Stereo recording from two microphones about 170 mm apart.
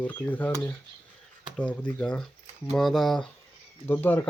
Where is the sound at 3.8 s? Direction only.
10° left (ahead or behind).